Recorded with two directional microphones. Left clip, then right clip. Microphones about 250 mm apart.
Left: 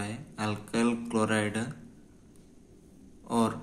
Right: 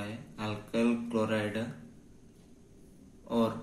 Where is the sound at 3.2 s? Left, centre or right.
Left.